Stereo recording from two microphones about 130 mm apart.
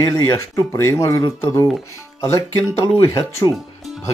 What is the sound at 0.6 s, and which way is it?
Speech, 25° left (ahead or behind).